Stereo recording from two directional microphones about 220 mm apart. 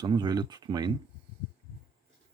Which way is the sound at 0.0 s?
20° right (ahead or behind).